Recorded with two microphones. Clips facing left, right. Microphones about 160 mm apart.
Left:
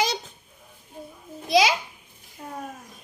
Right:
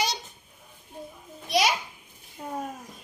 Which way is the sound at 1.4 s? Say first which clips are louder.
Left 5 dB; 90° left.